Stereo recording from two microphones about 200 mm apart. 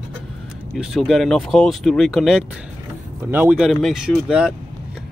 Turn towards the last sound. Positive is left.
turn(degrees=0)  # may be behind; listen again after turning